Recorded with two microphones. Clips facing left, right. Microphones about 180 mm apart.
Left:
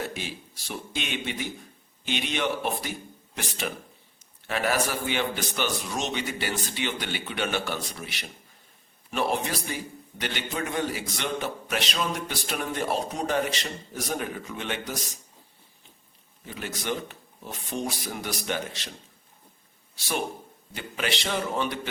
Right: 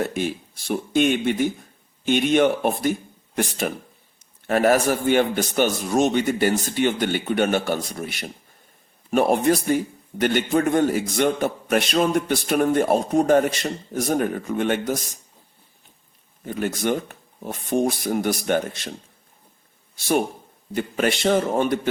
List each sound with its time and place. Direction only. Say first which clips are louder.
0.0 s a man's voice: right 9 dB; 55° right (ahead or behind)
16.5 s a man's voice: right 9 dB; 50° right (ahead or behind)
20.0 s a man's voice: right 9 dB; 50° right (ahead or behind)